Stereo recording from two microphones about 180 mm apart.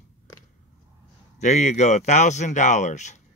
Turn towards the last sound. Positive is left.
turn(degrees=40)  # may be behind; listen again after turning